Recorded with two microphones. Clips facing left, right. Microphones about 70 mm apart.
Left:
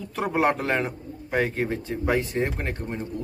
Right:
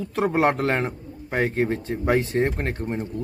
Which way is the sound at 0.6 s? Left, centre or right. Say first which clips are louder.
Right 2 dB; right.